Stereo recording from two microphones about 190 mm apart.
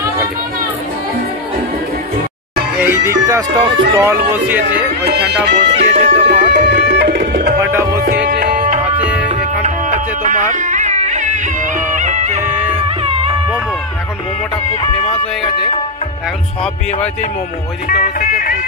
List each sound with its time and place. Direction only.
2.8 s speech: 15° right (ahead or behind)
4.3 s speech: 10° right (ahead or behind)
5.0 s music: 60° right (ahead or behind)
7.6 s speech: 15° right (ahead or behind)
8.3 s music: 50° right (ahead or behind)
8.9 s music: 5° right (ahead or behind)
9.3 s music: 40° right (ahead or behind)
12.4 s music: 10° right (ahead or behind)